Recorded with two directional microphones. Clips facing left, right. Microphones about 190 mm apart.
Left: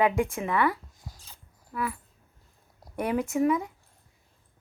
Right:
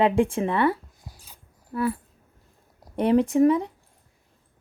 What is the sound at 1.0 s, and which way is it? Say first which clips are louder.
Dog: even; 10° right (ahead or behind).